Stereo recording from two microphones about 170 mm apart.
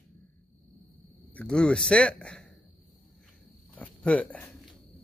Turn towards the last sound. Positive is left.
turn(degrees=10)  # may be behind; listen again after turning